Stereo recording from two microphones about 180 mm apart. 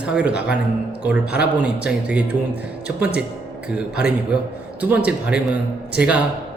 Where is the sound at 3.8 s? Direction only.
5° right (ahead or behind).